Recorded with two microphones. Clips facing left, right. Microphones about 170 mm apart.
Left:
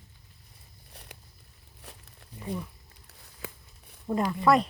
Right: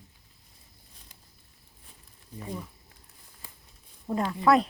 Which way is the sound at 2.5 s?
65° left (ahead or behind).